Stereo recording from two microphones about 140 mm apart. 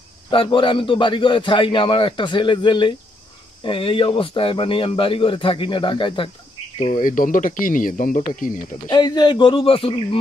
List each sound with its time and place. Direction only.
0.3 s a man's voice: 35° left (ahead or behind)
6.9 s speech: 70° left (ahead or behind)
8.9 s a man's voice: 30° left (ahead or behind)